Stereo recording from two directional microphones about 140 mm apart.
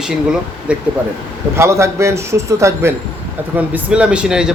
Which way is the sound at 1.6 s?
20° right (ahead or behind).